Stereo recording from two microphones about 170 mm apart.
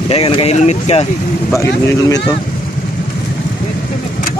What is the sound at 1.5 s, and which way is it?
Speech, 15° left (ahead or behind).